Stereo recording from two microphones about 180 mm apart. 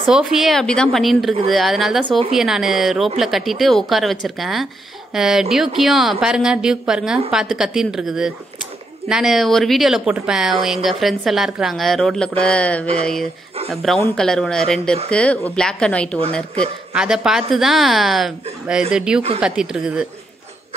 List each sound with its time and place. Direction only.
0.0 s speech: centre (ahead or behind)
2.0 s a woman's voice: 30° right (ahead or behind)
2.3 s speech: centre (ahead or behind)